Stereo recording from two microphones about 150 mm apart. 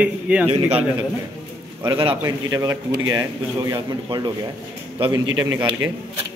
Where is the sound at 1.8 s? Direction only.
35° right (ahead or behind).